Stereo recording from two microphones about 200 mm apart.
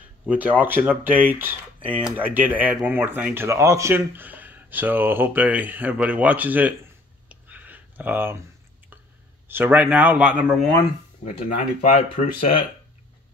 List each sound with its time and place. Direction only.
0.3 s speech: 10° right (ahead or behind)
7.2 s a sound: 10° right (ahead or behind)
9.5 s speech: 10° right (ahead or behind)
11.2 s speech: 40° left (ahead or behind)